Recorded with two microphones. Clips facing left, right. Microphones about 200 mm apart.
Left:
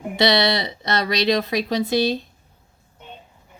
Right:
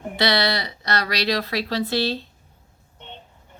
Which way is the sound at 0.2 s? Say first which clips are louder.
Left 3 dB; 20° left (ahead or behind).